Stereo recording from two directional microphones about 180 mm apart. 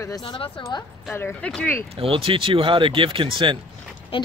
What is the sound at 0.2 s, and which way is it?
Speech, 30° left (ahead or behind).